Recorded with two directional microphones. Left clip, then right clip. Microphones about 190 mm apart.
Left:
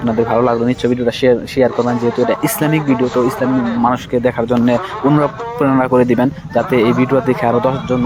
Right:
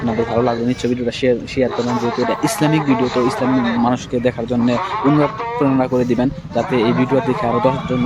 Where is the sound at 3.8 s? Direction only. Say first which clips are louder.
Left 3 dB; 10° right (ahead or behind).